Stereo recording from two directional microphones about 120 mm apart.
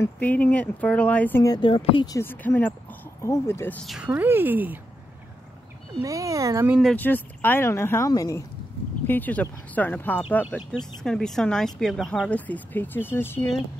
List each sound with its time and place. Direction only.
0.0 s speech: 15° left (ahead or behind)
1.6 s speech: 50° left (ahead or behind)
2.0 s speech: 20° left (ahead or behind)
3.8 s speech: centre (ahead or behind)
4.1 s speech: 15° right (ahead or behind)
6.0 s speech: 25° right (ahead or behind)
7.0 s speech: 15° left (ahead or behind)
9.0 s speech: 15° left (ahead or behind)
10.5 s speech: 5° left (ahead or behind)